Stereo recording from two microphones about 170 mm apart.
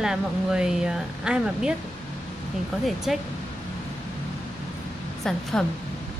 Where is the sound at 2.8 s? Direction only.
Centre (ahead or behind).